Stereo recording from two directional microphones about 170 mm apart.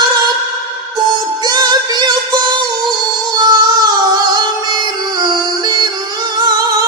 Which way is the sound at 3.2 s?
25° right (ahead or behind).